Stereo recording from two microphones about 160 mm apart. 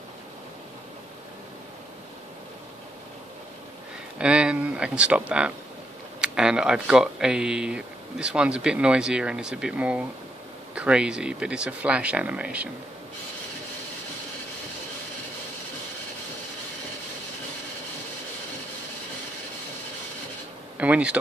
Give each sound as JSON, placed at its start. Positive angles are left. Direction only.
{"t": 4.2, "sound": "speech", "side_deg": -5}
{"t": 6.2, "sound": "speech", "side_deg": -5}
{"t": 20.7, "sound": "speech", "side_deg": -10}